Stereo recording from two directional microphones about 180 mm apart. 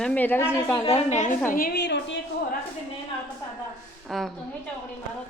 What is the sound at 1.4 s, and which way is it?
A woman's voice, 55° left (ahead or behind).